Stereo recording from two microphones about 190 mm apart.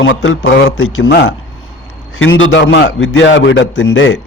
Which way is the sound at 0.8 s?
90° left.